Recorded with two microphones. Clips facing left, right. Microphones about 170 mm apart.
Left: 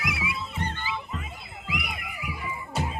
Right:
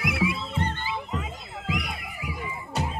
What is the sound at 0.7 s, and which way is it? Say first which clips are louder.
Music: right 2 dB; 70° right (ahead or behind).